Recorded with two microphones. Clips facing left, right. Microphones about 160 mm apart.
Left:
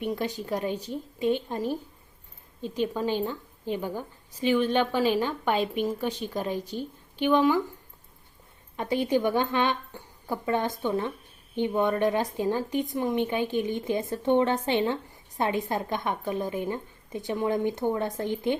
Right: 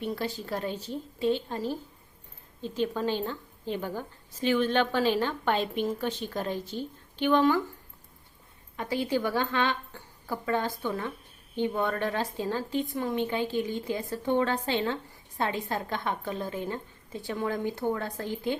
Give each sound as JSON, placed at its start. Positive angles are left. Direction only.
{"t": 0.0, "sound": "a woman's voice", "side_deg": 15}
{"t": 8.7, "sound": "a woman's voice", "side_deg": 20}